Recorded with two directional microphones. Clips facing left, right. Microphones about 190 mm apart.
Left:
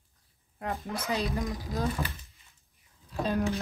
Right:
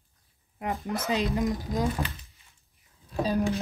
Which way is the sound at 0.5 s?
15° right (ahead or behind).